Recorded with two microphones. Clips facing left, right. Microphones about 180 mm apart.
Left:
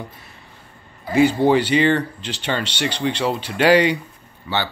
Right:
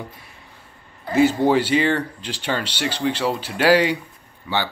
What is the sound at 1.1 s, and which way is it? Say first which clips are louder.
Speech: left 1 dB; 5° right (ahead or behind).